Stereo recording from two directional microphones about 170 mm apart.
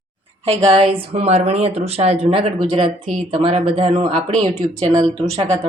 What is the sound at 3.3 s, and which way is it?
A woman's voice, 35° right (ahead or behind).